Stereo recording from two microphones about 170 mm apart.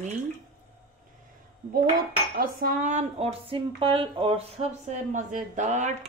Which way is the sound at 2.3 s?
50° right (ahead or behind).